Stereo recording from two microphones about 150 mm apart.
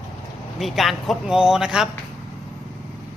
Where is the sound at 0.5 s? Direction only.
Centre (ahead or behind).